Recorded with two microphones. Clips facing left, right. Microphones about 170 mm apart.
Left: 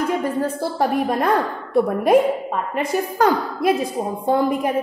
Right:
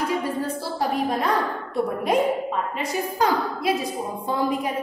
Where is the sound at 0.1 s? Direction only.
50° left (ahead or behind).